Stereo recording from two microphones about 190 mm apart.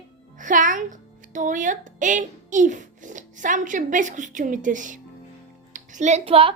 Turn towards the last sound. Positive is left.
turn(degrees=-30)  # may be behind; listen again after turning